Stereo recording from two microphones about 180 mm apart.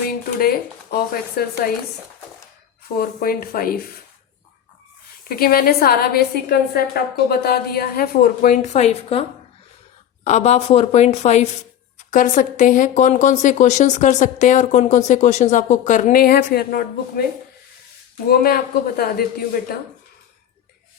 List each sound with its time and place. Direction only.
0.3 s a woman's voice: 60° left (ahead or behind)
3.0 s a woman's voice: 55° left (ahead or behind)
5.2 s a woman's voice: 55° left (ahead or behind); by 9.2 s 35° left (ahead or behind)
10.2 s a woman's voice: 40° left (ahead or behind); by 17.2 s 55° left (ahead or behind)
18.3 s a woman's voice: 55° left (ahead or behind)